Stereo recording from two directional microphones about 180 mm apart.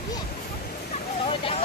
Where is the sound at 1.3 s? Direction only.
30° left (ahead or behind).